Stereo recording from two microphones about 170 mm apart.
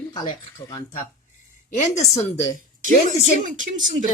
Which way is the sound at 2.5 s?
50° right (ahead or behind).